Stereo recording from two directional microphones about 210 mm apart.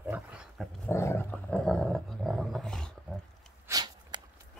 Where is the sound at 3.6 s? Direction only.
20° right (ahead or behind).